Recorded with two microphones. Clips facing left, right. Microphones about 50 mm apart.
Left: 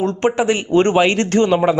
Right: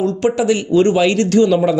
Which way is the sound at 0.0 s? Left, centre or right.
Left.